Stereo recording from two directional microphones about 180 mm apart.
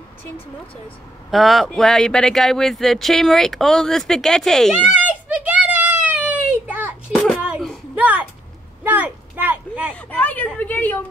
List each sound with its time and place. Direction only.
1.3 s speech: centre (ahead or behind)
5.4 s children playing: 10° right (ahead or behind)
7.2 s a sound: centre (ahead or behind)
9.9 s a woman's voice: 10° left (ahead or behind)